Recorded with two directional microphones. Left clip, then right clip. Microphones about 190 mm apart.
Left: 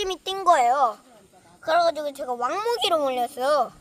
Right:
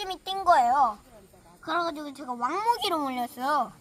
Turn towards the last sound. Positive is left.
turn(degrees=30)  # may be behind; listen again after turning